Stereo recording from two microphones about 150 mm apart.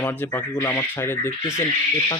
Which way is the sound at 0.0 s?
15° left (ahead or behind).